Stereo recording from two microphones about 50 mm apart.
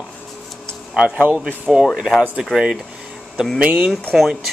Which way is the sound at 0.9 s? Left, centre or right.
Centre.